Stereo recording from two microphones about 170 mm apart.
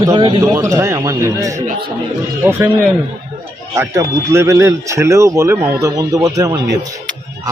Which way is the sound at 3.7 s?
15° right (ahead or behind).